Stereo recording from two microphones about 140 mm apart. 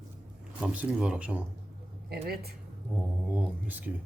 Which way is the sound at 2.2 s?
90° right.